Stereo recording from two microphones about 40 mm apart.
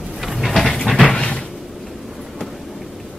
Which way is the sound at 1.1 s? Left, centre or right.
Left.